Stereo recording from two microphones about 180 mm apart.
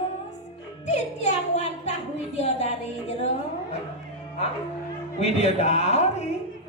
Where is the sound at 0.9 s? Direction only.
40° left (ahead or behind).